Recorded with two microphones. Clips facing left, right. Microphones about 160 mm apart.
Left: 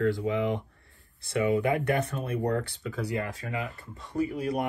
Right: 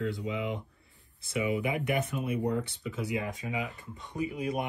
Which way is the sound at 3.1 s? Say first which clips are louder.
Left 1 dB; centre (ahead or behind).